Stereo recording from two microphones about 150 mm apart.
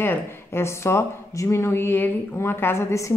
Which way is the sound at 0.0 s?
15° left (ahead or behind).